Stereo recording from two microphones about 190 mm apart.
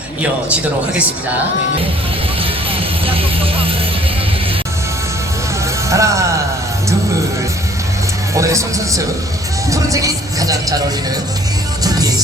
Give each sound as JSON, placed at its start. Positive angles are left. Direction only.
{"t": 0.2, "sound": "speech", "side_deg": -5}
{"t": 2.4, "sound": "music", "side_deg": -30}
{"t": 5.9, "sound": "speech", "side_deg": -15}
{"t": 8.4, "sound": "speech", "side_deg": -15}
{"t": 11.8, "sound": "music", "side_deg": -20}